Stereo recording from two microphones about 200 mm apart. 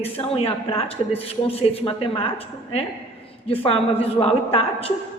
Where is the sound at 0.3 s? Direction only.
30° left (ahead or behind).